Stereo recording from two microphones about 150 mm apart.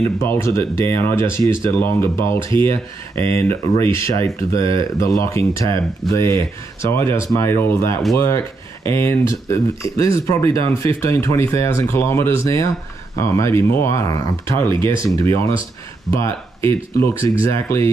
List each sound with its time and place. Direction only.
0.2 s speech: 20° left (ahead or behind)